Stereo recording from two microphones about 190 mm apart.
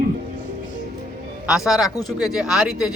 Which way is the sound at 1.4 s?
Centre (ahead or behind).